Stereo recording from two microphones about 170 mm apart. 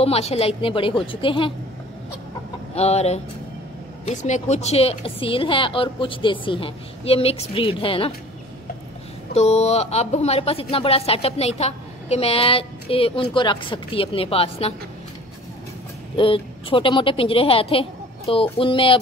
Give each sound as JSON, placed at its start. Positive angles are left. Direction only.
{"t": 0.0, "sound": "speech", "side_deg": 35}
{"t": 2.7, "sound": "speech", "side_deg": 40}
{"t": 9.3, "sound": "speech", "side_deg": 40}
{"t": 16.2, "sound": "speech", "side_deg": 30}